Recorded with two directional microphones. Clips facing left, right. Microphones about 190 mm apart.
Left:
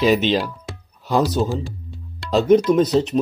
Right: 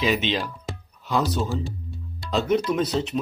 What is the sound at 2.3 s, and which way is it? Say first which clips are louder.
Speech: left 8 dB; 40° left (ahead or behind).